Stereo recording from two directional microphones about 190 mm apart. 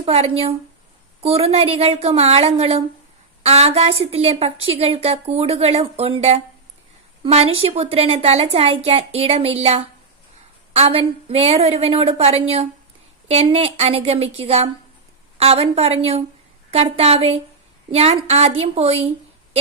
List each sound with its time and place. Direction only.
0.0 s a woman's voice: 30° right (ahead or behind)